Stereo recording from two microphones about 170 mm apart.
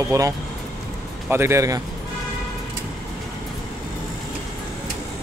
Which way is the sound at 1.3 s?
15° right (ahead or behind).